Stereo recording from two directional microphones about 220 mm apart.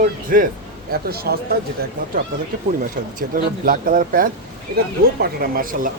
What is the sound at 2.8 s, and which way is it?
Speech, 40° right (ahead or behind).